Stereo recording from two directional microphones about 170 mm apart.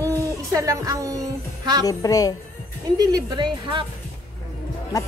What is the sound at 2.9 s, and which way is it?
Speech, 25° right (ahead or behind).